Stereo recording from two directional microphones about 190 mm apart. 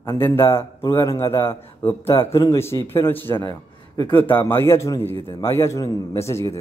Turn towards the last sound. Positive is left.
turn(degrees=15)  # may be behind; listen again after turning